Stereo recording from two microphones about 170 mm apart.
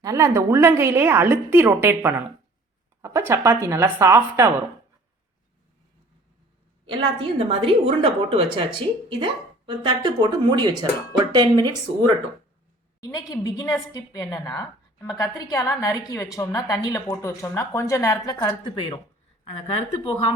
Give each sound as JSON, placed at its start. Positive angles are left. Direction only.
{"t": 0.0, "sound": "a woman's voice", "side_deg": -20}
{"t": 6.8, "sound": "a woman's voice", "side_deg": -30}
{"t": 13.0, "sound": "a woman's voice", "side_deg": 20}